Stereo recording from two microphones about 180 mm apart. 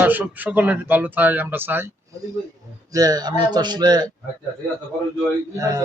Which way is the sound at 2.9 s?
20° right (ahead or behind).